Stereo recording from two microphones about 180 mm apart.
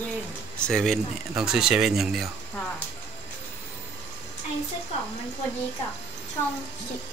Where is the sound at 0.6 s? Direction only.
5° left (ahead or behind).